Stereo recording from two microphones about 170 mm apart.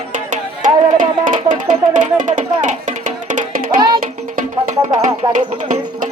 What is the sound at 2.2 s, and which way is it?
Speech, 45° right (ahead or behind).